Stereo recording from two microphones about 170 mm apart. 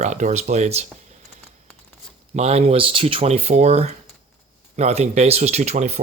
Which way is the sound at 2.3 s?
40° right (ahead or behind).